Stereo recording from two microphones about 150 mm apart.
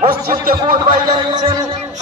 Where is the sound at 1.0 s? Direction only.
25° right (ahead or behind).